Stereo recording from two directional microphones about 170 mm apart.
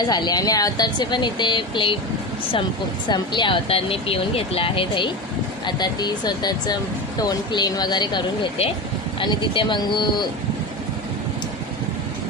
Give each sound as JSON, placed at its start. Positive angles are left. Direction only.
{"t": 0.1, "sound": "speech", "side_deg": 25}
{"t": 3.1, "sound": "speech", "side_deg": 30}